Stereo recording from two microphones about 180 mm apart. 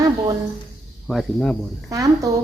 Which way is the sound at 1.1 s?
5° left (ahead or behind).